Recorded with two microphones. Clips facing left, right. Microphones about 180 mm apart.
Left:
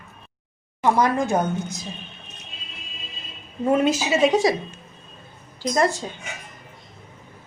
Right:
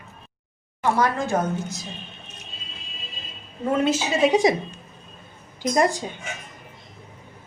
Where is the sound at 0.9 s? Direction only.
15° left (ahead or behind).